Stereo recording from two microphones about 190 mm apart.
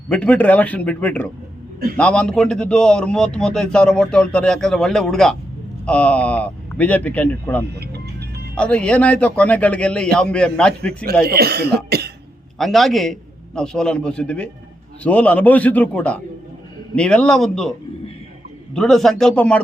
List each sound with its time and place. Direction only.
0.1 s a man's voice: 5° left (ahead or behind)
7.7 s music: 60° right (ahead or behind)
8.5 s a man's voice: 5° left (ahead or behind)
11.3 s speech: 55° right (ahead or behind)
12.5 s a man's voice: centre (ahead or behind)